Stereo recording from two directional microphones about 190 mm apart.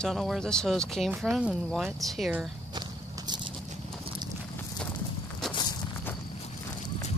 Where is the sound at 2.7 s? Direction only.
25° right (ahead or behind).